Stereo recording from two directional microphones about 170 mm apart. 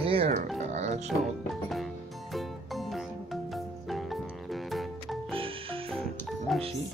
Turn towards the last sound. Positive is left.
turn(degrees=0)  # may be behind; listen again after turning